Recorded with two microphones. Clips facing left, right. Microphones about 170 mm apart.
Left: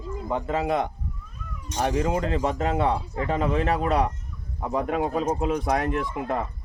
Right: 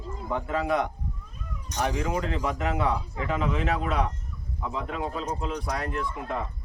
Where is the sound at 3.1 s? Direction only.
40° left (ahead or behind).